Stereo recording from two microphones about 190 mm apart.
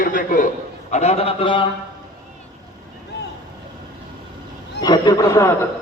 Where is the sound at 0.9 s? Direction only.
35° left (ahead or behind).